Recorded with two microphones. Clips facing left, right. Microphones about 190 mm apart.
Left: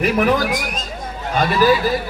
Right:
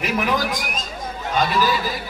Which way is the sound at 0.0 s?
55° left (ahead or behind).